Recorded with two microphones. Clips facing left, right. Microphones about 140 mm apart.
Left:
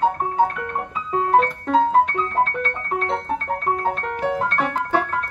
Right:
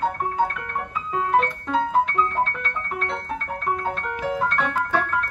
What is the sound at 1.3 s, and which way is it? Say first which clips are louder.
Music: left 4 dB; 40° left (ahead or behind).